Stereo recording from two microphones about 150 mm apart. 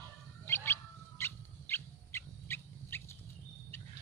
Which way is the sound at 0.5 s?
15° left (ahead or behind).